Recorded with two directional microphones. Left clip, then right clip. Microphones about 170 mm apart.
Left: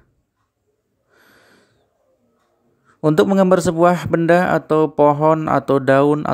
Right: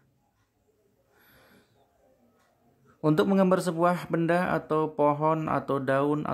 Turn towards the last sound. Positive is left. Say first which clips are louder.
# left 12 dB
turn(degrees=40)  # may be behind; listen again after turning